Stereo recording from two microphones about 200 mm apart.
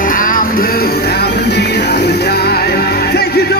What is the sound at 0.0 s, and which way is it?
Music, 45° left (ahead or behind).